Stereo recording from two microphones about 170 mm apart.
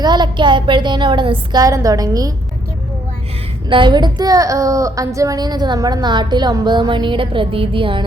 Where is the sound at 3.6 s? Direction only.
30° right (ahead or behind).